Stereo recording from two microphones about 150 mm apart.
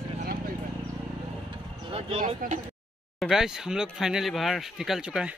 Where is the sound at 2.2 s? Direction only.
65° right (ahead or behind).